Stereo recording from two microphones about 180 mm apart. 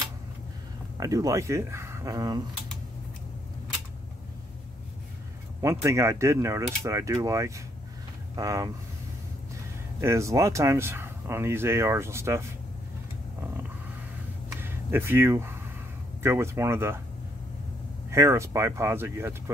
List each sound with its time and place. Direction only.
0.9 s speech: 20° right (ahead or behind)
5.6 s speech: 15° right (ahead or behind)
9.9 s speech: 15° right (ahead or behind)
14.5 s a sound: 10° right (ahead or behind)
16.2 s speech: 15° right (ahead or behind)
18.1 s speech: 15° right (ahead or behind)